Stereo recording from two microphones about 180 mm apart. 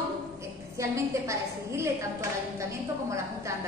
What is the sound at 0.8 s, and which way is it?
A woman's voice, 15° right (ahead or behind).